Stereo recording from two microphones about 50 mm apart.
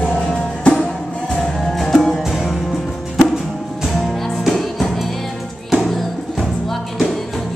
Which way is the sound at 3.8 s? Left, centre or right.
Centre.